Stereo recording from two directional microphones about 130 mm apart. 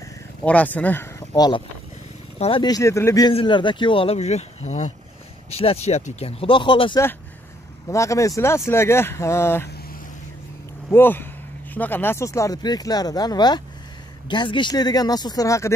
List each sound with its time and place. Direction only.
0.4 s speech: 10° left (ahead or behind)
1.3 s speech: 30° left (ahead or behind)
2.3 s speech: 50° left (ahead or behind)
2.6 s speech: 25° left (ahead or behind)
3.3 s speech: 40° left (ahead or behind); by 4.9 s 65° left (ahead or behind)
5.5 s speech: 50° left (ahead or behind)
7.9 s speech: 25° left (ahead or behind)
10.9 s speech: 15° left (ahead or behind)